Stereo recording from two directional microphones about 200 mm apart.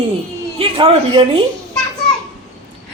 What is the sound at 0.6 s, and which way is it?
Speech, 25° right (ahead or behind).